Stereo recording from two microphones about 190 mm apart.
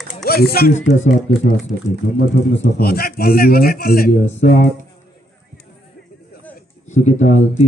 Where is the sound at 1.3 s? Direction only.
35° left (ahead or behind).